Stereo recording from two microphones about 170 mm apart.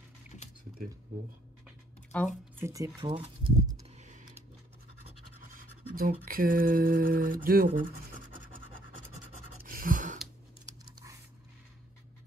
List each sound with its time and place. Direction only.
2.1 s speech: 10° left (ahead or behind)
2.6 s speech: 20° right (ahead or behind)
4.0 s typing: 45° right (ahead or behind)
5.5 s scratch: 55° right (ahead or behind)
9.7 s gasp: 55° right (ahead or behind)